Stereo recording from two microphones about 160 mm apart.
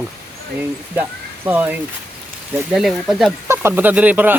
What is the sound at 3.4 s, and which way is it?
Speech, 15° right (ahead or behind).